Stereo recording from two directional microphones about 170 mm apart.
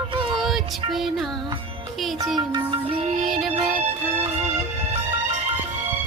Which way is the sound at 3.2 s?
Centre (ahead or behind).